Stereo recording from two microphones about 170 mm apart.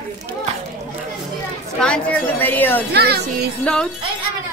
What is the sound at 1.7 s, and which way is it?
A woman's voice, 5° left (ahead or behind).